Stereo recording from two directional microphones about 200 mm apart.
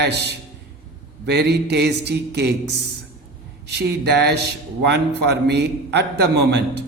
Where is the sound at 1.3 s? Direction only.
55° right (ahead or behind).